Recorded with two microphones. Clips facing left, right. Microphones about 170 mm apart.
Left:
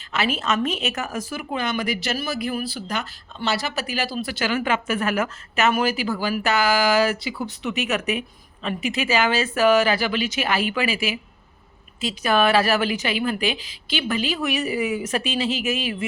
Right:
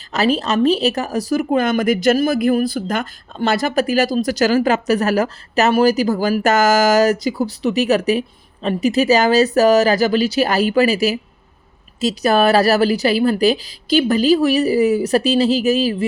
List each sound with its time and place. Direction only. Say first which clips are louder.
0.1 s speech: right 6 dB; 35° right (ahead or behind)